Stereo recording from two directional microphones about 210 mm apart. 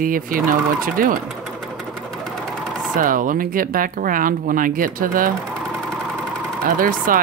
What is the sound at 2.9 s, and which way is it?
Speech, 40° right (ahead or behind).